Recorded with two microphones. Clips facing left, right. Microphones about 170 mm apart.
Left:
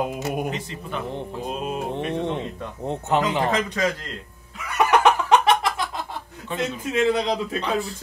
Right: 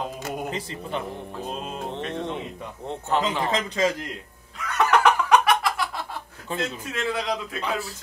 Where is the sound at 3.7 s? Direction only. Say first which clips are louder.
Right 1 dB; 25° right (ahead or behind).